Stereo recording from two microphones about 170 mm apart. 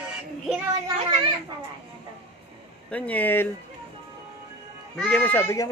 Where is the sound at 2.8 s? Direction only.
10° left (ahead or behind).